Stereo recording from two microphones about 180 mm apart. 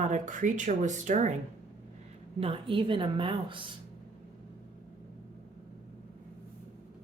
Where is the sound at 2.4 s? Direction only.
30° right (ahead or behind).